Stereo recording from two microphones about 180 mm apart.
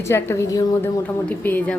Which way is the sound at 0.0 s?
15° left (ahead or behind).